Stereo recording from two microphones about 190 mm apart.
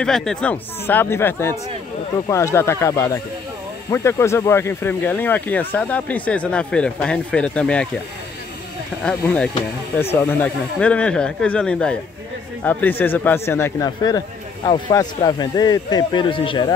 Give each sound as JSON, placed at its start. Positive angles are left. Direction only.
{"t": 0.0, "sound": "speech", "side_deg": 5}
{"t": 9.0, "sound": "speech", "side_deg": 5}